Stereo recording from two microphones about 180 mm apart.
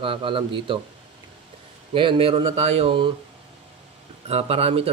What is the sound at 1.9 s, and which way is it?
Speech, 30° right (ahead or behind).